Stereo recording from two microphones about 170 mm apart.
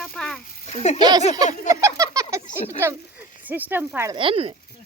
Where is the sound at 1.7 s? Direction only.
20° right (ahead or behind).